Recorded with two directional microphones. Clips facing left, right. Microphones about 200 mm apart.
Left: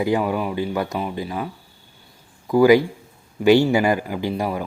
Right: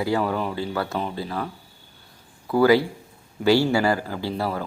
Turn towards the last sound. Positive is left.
turn(degrees=15)  # may be behind; listen again after turning